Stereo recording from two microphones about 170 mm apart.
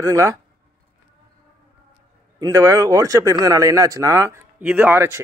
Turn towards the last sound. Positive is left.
turn(degrees=-15)  # may be behind; listen again after turning